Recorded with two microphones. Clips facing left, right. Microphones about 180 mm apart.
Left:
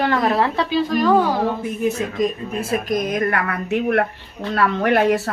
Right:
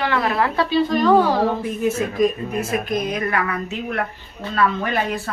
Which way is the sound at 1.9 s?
20° left (ahead or behind).